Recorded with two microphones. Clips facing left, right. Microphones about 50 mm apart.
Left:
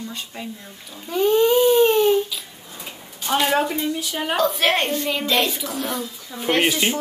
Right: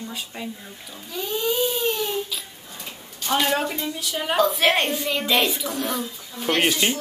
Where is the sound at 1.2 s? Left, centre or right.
Left.